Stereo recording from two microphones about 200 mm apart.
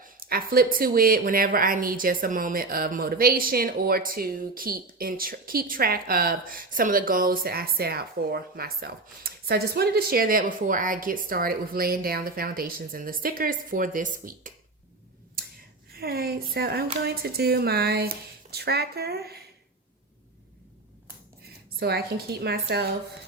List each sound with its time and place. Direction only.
0.0 s speech: 45° right (ahead or behind)
15.9 s speech: 50° right (ahead or behind)
21.8 s speech: 50° right (ahead or behind)